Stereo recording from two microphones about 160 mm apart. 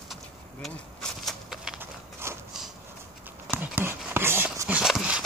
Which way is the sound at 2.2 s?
15° right (ahead or behind).